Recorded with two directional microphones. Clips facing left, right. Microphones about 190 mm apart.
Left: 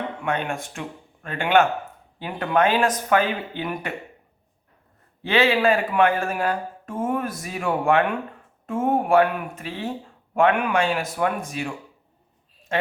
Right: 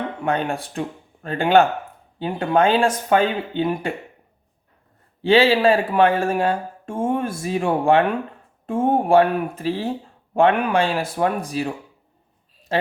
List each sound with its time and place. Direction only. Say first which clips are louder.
0.2 s speech: right 5 dB; 35° right (ahead or behind)
5.2 s speech: right 4 dB; 30° right (ahead or behind)
12.7 s speech: right 2 dB; 35° right (ahead or behind)